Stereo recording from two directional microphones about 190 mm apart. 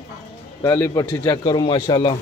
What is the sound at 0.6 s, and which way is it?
Speech, 15° left (ahead or behind).